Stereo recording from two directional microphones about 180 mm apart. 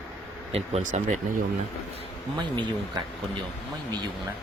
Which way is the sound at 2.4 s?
25° right (ahead or behind).